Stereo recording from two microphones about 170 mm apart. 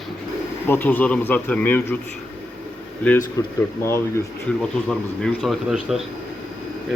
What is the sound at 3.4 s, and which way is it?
Speech, 20° left (ahead or behind).